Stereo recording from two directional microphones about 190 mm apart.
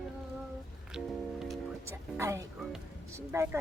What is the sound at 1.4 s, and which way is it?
Speech, 15° right (ahead or behind).